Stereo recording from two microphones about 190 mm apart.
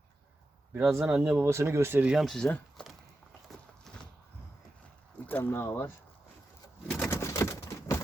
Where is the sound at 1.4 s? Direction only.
15° right (ahead or behind); by 2.9 s 5° left (ahead or behind).